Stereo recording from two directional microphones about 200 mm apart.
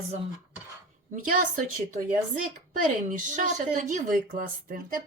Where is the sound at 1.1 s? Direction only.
40° right (ahead or behind).